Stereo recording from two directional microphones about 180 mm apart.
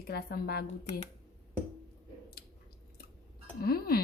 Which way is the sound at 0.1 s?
60° left (ahead or behind).